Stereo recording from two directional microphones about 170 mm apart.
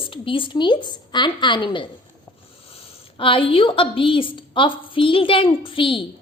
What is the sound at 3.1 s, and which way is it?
A woman's voice, 30° left (ahead or behind).